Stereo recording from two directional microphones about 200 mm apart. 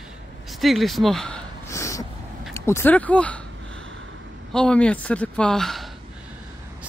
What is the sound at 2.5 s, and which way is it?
Speech, 10° left (ahead or behind).